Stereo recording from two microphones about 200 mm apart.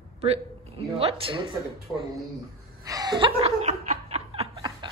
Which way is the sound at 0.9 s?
30° right (ahead or behind).